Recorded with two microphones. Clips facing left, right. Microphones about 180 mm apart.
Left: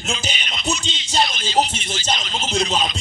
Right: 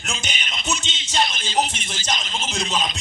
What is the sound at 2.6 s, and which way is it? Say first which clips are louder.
Speech: left 5 dB; 30° left (ahead or behind).